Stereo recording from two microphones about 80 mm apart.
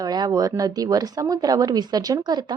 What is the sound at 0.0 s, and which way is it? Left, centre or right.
A woman's voice, right.